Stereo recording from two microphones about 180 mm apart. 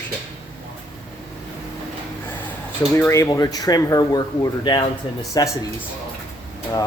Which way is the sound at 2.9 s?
15° left (ahead or behind).